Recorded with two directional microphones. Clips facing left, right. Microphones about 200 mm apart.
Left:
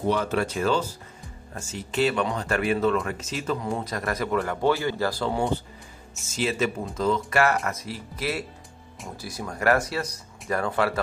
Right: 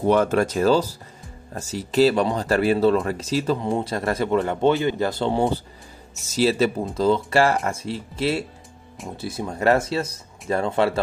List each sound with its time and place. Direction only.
0.1 s a man's voice: 50° right (ahead or behind); by 5.4 s 25° right (ahead or behind)
6.2 s a man's voice: 35° right (ahead or behind)